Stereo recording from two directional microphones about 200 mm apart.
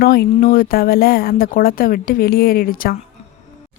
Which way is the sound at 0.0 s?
50° left (ahead or behind).